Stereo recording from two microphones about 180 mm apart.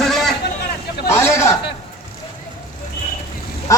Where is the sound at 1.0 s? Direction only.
15° left (ahead or behind).